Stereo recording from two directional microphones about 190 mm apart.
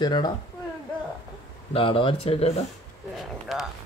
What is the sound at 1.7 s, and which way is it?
Speech, 30° left (ahead or behind).